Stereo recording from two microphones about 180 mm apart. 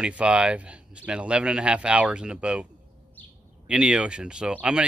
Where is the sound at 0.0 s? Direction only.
5° right (ahead or behind).